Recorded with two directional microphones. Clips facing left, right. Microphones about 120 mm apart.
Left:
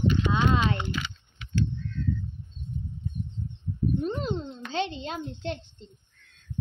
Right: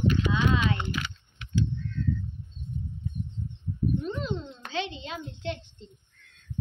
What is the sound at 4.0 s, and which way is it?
A child's voice, 45° left (ahead or behind).